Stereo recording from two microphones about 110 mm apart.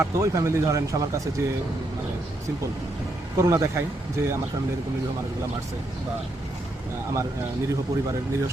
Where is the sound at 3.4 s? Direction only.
30° right (ahead or behind).